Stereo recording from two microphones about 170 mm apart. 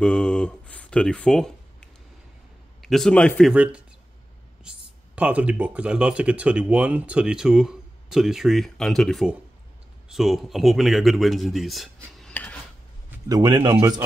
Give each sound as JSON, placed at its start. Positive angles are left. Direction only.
{"t": 0.0, "sound": "a man's voice", "side_deg": 5}
{"t": 3.5, "sound": "speech", "side_deg": -5}
{"t": 13.3, "sound": "a man's voice", "side_deg": -25}